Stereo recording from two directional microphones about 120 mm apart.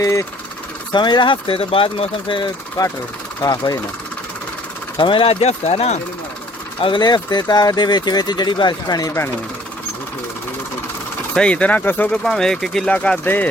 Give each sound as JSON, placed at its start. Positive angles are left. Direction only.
{"t": 0.0, "sound": "speech", "side_deg": 25}
{"t": 0.9, "sound": "speech", "side_deg": 40}
{"t": 2.8, "sound": "speech", "side_deg": 30}
{"t": 4.9, "sound": "speech", "side_deg": 45}
{"t": 6.8, "sound": "speech", "side_deg": 40}
{"t": 11.3, "sound": "speech", "side_deg": 10}